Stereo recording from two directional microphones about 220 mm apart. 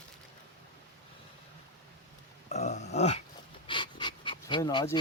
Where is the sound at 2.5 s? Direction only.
30° left (ahead or behind).